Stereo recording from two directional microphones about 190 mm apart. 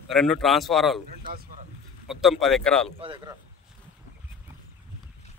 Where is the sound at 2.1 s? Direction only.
Centre (ahead or behind).